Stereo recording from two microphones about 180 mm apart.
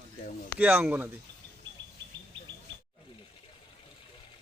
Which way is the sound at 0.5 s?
10° right (ahead or behind).